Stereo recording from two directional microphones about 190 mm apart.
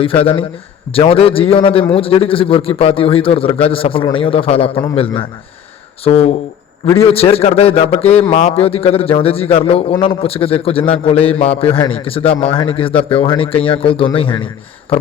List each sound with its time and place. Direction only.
0.0 s a man's voice: 30° left (ahead or behind)